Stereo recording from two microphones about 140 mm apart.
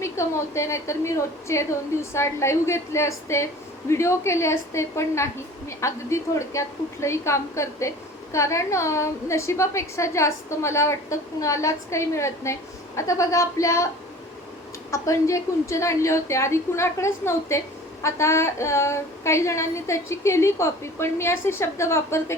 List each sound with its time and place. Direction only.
0.0 s a woman's voice: 20° left (ahead or behind)
14.8 s a woman's voice: 20° left (ahead or behind)